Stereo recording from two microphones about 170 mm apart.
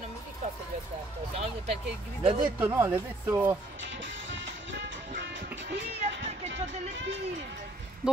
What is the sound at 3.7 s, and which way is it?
Music, 90° right.